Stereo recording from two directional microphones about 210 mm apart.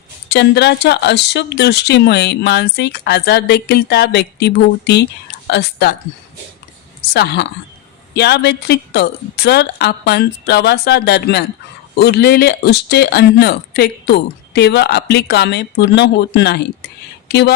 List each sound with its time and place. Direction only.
0.3 s speech: 55° left (ahead or behind)
7.1 s speech: 50° left (ahead or behind)